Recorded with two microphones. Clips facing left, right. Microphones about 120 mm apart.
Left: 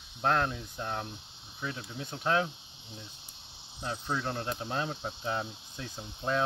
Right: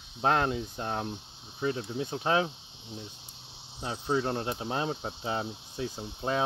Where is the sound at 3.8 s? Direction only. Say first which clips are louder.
Right 4 dB; 15° right (ahead or behind).